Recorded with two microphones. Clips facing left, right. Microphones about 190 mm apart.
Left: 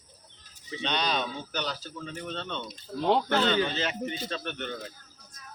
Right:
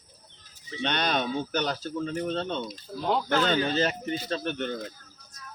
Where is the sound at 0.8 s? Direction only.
55° right (ahead or behind); by 4.8 s 35° right (ahead or behind).